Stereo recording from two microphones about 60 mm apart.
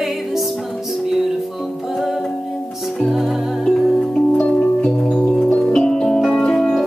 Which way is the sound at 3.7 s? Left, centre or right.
Centre.